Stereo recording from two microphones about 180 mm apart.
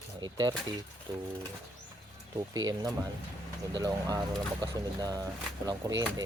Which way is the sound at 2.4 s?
20° right (ahead or behind).